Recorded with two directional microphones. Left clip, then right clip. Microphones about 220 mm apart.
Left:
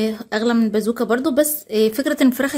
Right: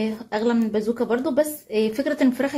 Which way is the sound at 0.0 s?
45° left (ahead or behind).